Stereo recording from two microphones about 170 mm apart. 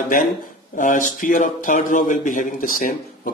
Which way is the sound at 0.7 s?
50° left (ahead or behind).